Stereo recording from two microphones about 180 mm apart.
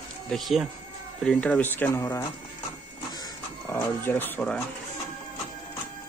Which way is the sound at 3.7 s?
10° left (ahead or behind).